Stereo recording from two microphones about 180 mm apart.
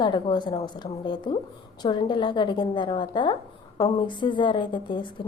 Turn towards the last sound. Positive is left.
turn(degrees=25)  # may be behind; listen again after turning